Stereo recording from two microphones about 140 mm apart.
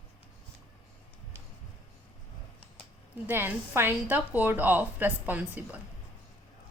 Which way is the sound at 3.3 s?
15° right (ahead or behind).